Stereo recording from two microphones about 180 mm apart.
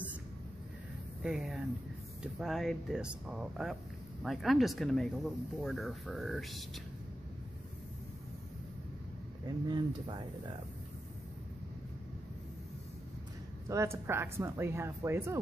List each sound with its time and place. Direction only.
1.2 s speech: 5° right (ahead or behind)
9.7 s speech: 25° right (ahead or behind)
13.7 s speech: 15° right (ahead or behind)